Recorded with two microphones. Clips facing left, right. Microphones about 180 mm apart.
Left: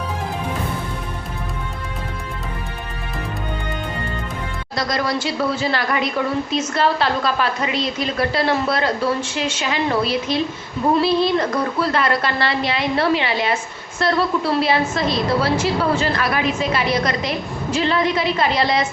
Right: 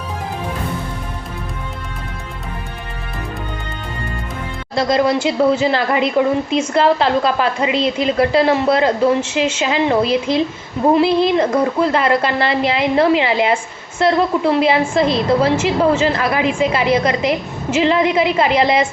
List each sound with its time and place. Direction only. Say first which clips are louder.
4.7 s speech: right 7 dB; 25° right (ahead or behind)